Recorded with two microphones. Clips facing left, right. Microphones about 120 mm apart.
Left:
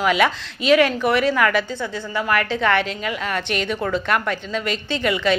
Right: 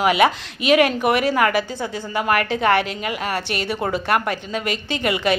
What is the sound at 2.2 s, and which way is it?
Speech, 50° right (ahead or behind).